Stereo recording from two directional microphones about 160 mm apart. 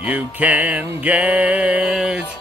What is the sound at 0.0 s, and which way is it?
Speech, 10° right (ahead or behind).